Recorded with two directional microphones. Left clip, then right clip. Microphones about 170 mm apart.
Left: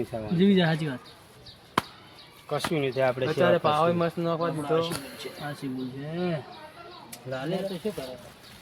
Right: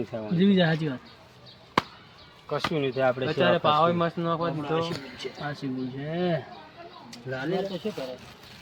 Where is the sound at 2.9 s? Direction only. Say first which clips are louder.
Right 1 dB; 15° left (ahead or behind).